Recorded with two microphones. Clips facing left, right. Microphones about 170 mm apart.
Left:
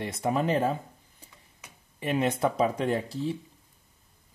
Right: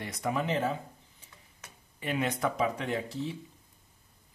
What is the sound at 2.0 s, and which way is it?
Speech, 25° left (ahead or behind).